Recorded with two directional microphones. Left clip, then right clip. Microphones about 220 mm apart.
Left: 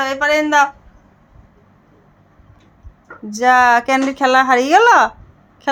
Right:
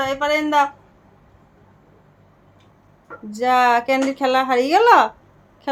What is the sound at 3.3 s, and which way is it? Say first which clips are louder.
Speech: left 5 dB; 25° left (ahead or behind).